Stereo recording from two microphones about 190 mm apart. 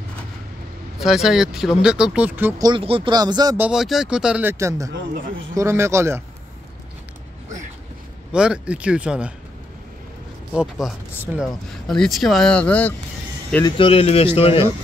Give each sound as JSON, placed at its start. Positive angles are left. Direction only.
{"t": 0.9, "sound": "speech", "side_deg": 0}
{"t": 2.7, "sound": "speech", "side_deg": -30}
{"t": 3.5, "sound": "speech", "side_deg": -5}
{"t": 8.3, "sound": "speech", "side_deg": -5}
{"t": 10.5, "sound": "speech", "side_deg": 0}
{"t": 13.7, "sound": "speech", "side_deg": 30}